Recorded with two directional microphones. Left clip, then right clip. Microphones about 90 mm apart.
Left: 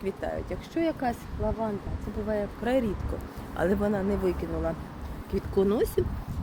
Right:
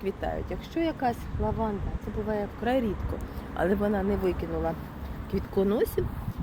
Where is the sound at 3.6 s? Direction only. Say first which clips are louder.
Even; 35° left (ahead or behind).